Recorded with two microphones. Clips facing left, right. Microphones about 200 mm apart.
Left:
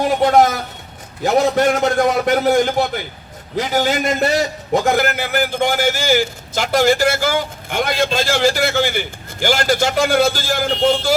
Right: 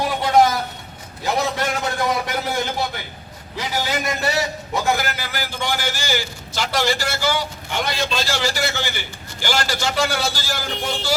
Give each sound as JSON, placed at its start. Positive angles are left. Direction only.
{"t": 0.2, "sound": "a sound", "side_deg": 55}
{"t": 1.2, "sound": "a man's voice", "side_deg": 50}
{"t": 3.6, "sound": "a man's voice", "side_deg": 50}